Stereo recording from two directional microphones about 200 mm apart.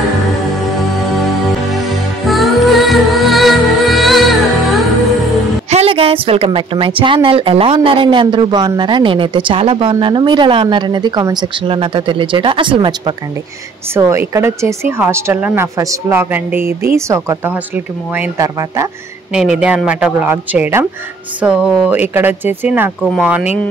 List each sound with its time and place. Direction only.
0.3 s music: centre (ahead or behind)
2.2 s music: centre (ahead or behind)
5.7 s a woman's voice: 30° right (ahead or behind)
19.3 s a woman's voice: 5° right (ahead or behind)